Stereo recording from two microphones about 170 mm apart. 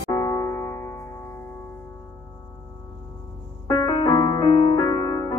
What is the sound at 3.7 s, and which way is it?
Music, 25° left (ahead or behind).